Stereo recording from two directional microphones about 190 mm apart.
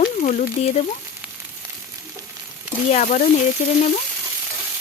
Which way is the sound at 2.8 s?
40° left (ahead or behind).